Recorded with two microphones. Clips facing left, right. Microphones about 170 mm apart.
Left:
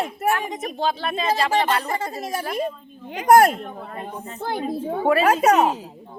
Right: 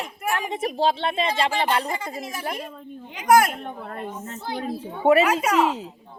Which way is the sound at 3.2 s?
40° left (ahead or behind).